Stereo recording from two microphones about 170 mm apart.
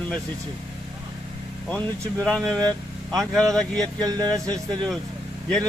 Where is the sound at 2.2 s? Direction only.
5° left (ahead or behind).